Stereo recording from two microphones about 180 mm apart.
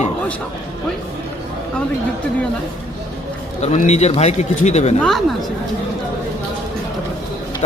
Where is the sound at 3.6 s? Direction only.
40° left (ahead or behind).